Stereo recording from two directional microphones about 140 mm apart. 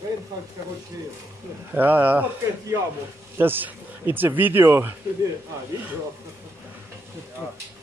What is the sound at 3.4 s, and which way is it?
Speech, 15° right (ahead or behind).